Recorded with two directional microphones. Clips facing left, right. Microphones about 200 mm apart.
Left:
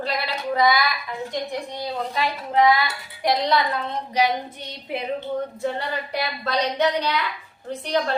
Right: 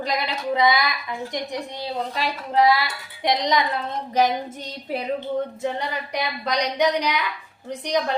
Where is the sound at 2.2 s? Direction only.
35° right (ahead or behind).